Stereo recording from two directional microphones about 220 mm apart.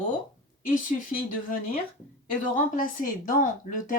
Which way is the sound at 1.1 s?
40° left (ahead or behind).